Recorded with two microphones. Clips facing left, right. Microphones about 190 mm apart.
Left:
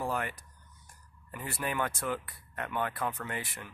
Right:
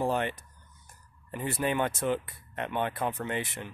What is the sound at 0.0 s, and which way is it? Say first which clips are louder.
Speech: right 5 dB; 25° right (ahead or behind).